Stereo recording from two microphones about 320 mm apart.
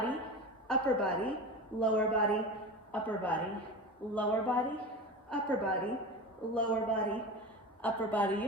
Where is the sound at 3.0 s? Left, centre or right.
Centre.